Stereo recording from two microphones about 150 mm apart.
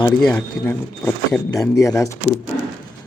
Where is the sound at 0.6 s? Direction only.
15° left (ahead or behind).